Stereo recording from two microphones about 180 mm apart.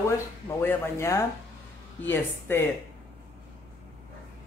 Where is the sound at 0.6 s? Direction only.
15° left (ahead or behind).